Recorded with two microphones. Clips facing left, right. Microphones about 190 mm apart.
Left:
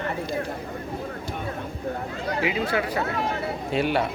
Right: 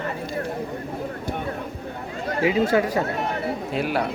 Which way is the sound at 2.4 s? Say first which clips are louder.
Right 7 dB; 40° right (ahead or behind).